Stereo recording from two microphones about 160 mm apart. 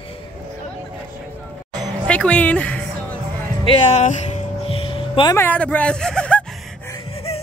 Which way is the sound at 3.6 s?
45° left (ahead or behind).